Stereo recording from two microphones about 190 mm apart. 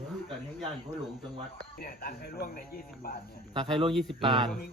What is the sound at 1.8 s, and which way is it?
Speech, 50° left (ahead or behind).